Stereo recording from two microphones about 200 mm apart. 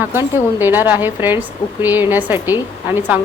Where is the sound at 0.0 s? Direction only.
10° right (ahead or behind).